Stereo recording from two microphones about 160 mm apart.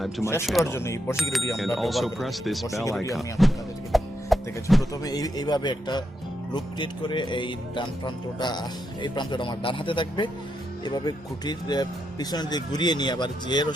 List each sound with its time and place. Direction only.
0.2 s speech: 15° left (ahead or behind)
1.5 s speech: centre (ahead or behind)
3.9 s music: centre (ahead or behind)
5.0 s speech: 25° left (ahead or behind)